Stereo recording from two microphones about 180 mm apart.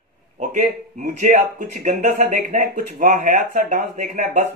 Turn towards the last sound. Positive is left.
turn(degrees=-45)  # may be behind; listen again after turning